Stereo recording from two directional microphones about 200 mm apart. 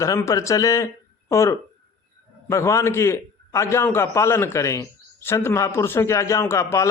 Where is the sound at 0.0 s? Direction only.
15° left (ahead or behind).